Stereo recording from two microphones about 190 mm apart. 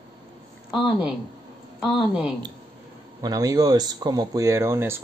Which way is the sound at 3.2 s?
20° right (ahead or behind).